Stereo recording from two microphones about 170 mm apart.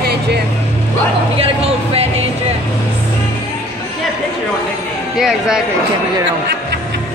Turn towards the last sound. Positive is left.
turn(degrees=-5)  # may be behind; listen again after turning